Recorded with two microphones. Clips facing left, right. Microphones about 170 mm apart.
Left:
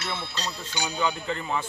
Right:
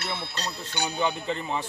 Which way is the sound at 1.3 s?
25° right (ahead or behind).